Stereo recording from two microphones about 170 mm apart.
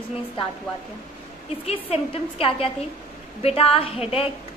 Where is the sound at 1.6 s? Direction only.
35° left (ahead or behind).